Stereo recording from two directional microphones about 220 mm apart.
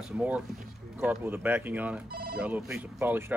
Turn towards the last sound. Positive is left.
turn(degrees=-10)  # may be behind; listen again after turning